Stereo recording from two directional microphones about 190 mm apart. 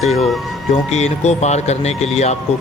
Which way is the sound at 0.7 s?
35° left (ahead or behind).